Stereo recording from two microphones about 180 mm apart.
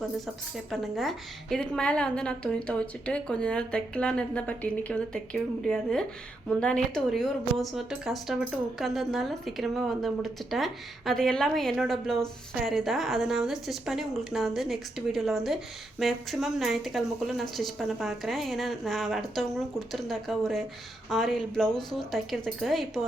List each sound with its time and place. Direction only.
0.5 s a woman's voice: centre (ahead or behind)